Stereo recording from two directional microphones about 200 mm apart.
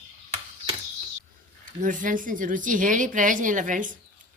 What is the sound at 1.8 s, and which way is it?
A woman's voice, 40° right (ahead or behind).